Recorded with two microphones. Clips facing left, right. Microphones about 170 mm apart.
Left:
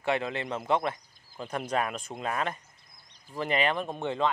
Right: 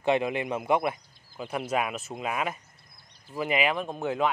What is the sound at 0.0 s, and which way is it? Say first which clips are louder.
Speech: right 4 dB; 15° right (ahead or behind).